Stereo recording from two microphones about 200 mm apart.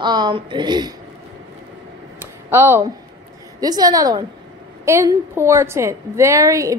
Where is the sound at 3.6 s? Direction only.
20° right (ahead or behind).